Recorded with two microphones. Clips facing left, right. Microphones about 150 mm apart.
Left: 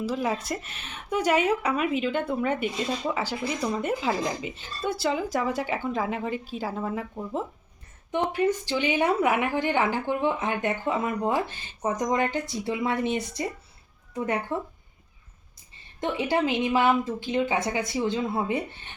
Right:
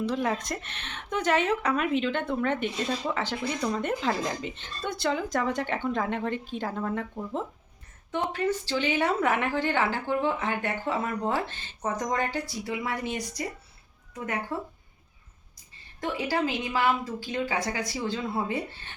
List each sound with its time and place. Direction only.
0.0 s a woman's voice: 5° left (ahead or behind); by 13.5 s 25° left (ahead or behind)
16.0 s a woman's voice: 25° left (ahead or behind)